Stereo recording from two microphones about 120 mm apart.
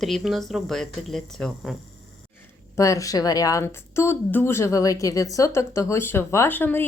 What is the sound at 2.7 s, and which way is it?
Speech, 25° left (ahead or behind).